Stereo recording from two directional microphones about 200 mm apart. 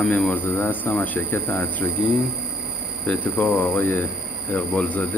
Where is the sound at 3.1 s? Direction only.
10° left (ahead or behind).